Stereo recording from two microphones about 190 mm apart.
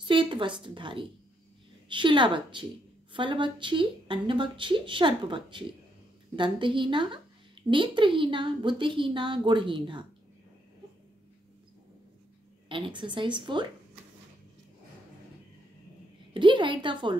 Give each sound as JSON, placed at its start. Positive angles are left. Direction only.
{"t": 0.0, "sound": "speech", "side_deg": -25}
{"t": 12.6, "sound": "speech", "side_deg": -25}
{"t": 16.3, "sound": "speech", "side_deg": -25}